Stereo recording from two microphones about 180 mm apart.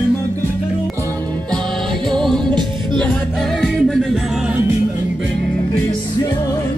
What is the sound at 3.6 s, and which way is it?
Music, 5° right (ahead or behind).